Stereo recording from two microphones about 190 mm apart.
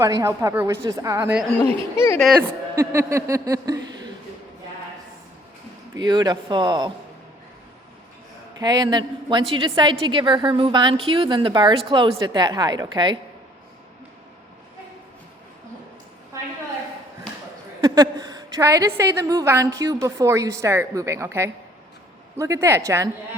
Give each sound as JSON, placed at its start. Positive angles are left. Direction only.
{"t": 0.0, "sound": "a woman's voice", "side_deg": -15}
{"t": 2.0, "sound": "speech", "side_deg": 5}
{"t": 2.7, "sound": "a woman's voice", "side_deg": -15}
{"t": 5.9, "sound": "a woman's voice", "side_deg": -20}
{"t": 8.5, "sound": "a woman's voice", "side_deg": -20}
{"t": 17.7, "sound": "a woman's voice", "side_deg": -20}